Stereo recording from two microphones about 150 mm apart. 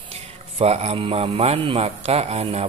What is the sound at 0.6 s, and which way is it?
Speech, 45° right (ahead or behind).